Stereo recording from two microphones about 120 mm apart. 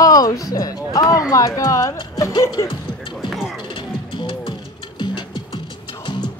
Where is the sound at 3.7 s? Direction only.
45° left (ahead or behind).